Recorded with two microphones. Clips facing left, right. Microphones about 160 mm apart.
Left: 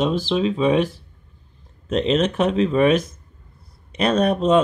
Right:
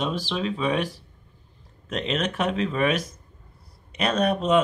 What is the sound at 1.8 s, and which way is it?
Speech, 35° left (ahead or behind).